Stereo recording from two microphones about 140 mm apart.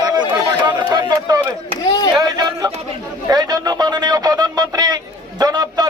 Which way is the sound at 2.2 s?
25° right (ahead or behind).